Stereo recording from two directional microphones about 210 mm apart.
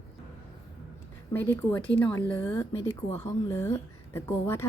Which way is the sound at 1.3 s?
10° left (ahead or behind).